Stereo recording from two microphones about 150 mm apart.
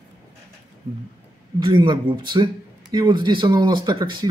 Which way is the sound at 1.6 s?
30° right (ahead or behind).